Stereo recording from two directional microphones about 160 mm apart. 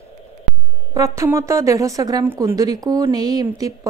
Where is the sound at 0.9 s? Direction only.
20° right (ahead or behind).